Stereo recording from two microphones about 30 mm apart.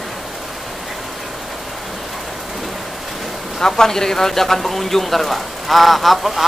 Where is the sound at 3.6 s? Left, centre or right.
Centre.